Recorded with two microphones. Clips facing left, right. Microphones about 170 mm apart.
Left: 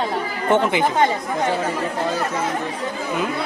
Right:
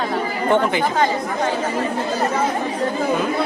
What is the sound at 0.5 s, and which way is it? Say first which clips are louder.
Speech: left 1 dB; 20° left (ahead or behind).